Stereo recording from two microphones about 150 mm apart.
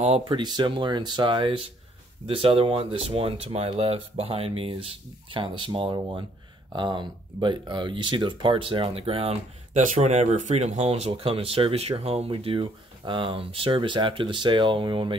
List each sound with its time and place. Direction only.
0.3 s speech: 30° right (ahead or behind)